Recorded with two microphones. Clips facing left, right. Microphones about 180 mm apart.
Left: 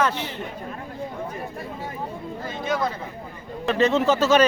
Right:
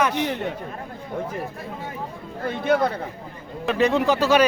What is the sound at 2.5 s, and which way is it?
Speech, 60° right (ahead or behind).